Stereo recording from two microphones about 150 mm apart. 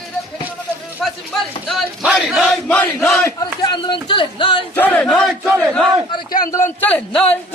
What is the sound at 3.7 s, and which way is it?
Speech, 30° left (ahead or behind).